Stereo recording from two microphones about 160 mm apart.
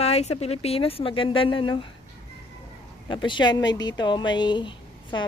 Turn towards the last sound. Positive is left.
turn(degrees=30)  # may be behind; listen again after turning